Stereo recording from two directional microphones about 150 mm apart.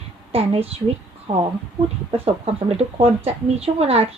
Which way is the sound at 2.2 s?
45° right (ahead or behind).